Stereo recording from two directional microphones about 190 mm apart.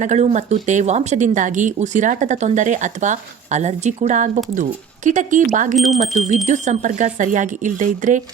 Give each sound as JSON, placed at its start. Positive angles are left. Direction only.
{"t": 0.0, "sound": "speech", "side_deg": -40}
{"t": 5.7, "sound": "speech", "side_deg": 0}
{"t": 6.0, "sound": "speech", "side_deg": -35}